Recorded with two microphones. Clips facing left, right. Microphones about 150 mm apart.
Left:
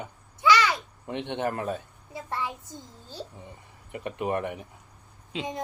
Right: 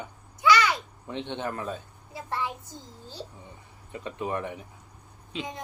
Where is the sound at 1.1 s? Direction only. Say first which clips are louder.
Left 3 dB; 70° left (ahead or behind).